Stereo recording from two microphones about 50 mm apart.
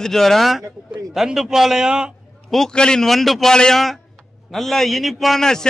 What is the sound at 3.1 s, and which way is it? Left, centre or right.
A man's voice, centre.